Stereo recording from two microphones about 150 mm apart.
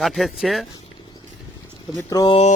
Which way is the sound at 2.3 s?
45° left (ahead or behind).